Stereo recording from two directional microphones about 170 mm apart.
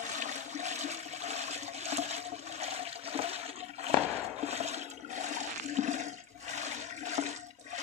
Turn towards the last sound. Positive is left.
turn(degrees=-45)  # may be behind; listen again after turning